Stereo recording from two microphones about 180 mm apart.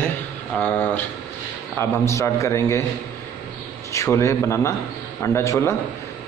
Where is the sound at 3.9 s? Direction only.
15° left (ahead or behind).